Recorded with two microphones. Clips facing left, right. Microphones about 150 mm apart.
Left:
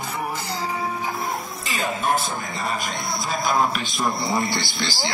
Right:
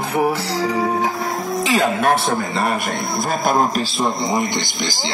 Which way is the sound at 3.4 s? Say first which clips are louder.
Right 4 dB; 45° right (ahead or behind).